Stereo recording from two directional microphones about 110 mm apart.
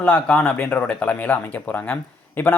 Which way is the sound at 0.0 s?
10° left (ahead or behind).